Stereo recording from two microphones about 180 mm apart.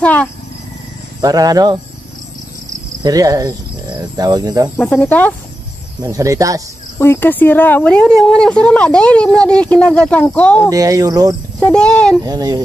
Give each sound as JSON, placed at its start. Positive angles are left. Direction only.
{"t": 0.0, "sound": "a woman's voice", "side_deg": 5}
{"t": 1.2, "sound": "speech", "side_deg": -20}
{"t": 3.0, "sound": "speech", "side_deg": -20}
{"t": 4.7, "sound": "a woman's voice", "side_deg": 10}
{"t": 6.0, "sound": "speech", "side_deg": -15}
{"t": 7.0, "sound": "a woman's voice", "side_deg": 10}
{"t": 10.7, "sound": "speech", "side_deg": -20}
{"t": 11.6, "sound": "speech", "side_deg": 5}
{"t": 12.2, "sound": "speech", "side_deg": -20}